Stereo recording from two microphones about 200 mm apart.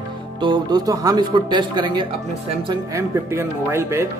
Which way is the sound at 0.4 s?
20° right (ahead or behind).